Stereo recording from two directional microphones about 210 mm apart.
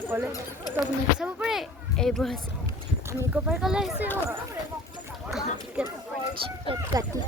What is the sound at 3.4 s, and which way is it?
Speech, centre (ahead or behind).